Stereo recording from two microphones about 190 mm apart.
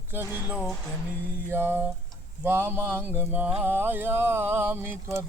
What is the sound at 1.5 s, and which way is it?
Mantra, 10° right (ahead or behind).